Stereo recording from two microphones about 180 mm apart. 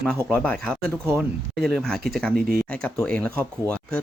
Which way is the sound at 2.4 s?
55° right (ahead or behind).